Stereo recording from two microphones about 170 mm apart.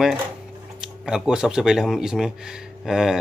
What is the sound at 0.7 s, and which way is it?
Speech, 5° right (ahead or behind).